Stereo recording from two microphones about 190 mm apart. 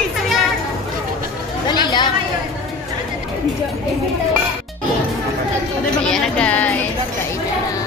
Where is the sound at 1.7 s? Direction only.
25° left (ahead or behind).